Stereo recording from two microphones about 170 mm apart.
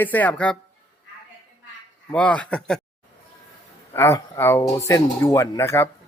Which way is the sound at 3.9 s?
15° left (ahead or behind).